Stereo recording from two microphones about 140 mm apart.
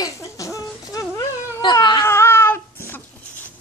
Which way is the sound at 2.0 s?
15° left (ahead or behind).